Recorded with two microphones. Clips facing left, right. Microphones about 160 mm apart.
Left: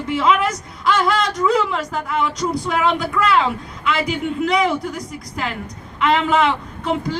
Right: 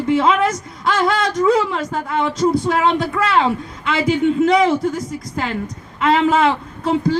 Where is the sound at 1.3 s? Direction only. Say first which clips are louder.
Right 3 dB; 25° right (ahead or behind).